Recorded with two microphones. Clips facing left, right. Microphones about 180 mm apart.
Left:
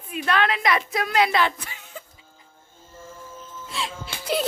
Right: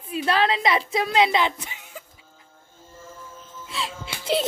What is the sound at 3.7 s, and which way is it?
Speech, centre (ahead or behind).